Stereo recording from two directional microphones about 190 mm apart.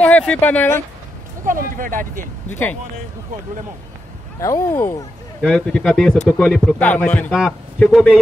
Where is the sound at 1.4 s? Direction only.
45° right (ahead or behind).